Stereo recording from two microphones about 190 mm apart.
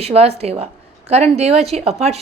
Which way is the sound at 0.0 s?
35° right (ahead or behind).